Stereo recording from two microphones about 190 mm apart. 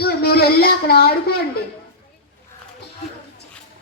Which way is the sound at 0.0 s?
55° left (ahead or behind).